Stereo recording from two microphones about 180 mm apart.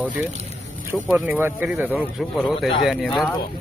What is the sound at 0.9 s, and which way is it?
Speech, 10° right (ahead or behind).